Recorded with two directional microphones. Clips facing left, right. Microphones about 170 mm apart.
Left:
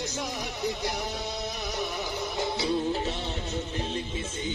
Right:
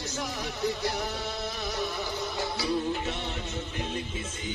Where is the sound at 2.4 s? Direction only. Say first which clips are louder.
Left 2 dB; 20° left (ahead or behind).